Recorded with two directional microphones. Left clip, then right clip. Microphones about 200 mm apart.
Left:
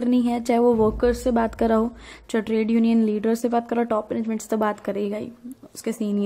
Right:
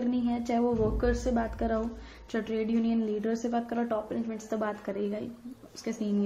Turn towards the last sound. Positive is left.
turn(degrees=40)  # may be behind; listen again after turning